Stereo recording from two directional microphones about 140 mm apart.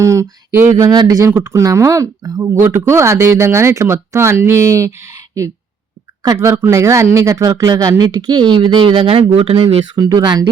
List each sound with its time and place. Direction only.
0.0 s speech: 20° right (ahead or behind); by 10.0 s 40° right (ahead or behind)
10.0 s speech: 30° right (ahead or behind)